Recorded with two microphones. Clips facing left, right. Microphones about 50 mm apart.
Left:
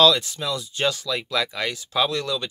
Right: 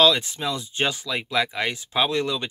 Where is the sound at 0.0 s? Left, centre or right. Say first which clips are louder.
Left 1 dB; right.